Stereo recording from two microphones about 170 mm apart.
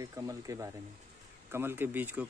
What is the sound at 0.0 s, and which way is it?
Speech, 20° right (ahead or behind).